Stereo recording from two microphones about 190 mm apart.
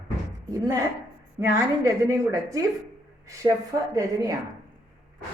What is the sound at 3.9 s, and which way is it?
Speech, 20° right (ahead or behind).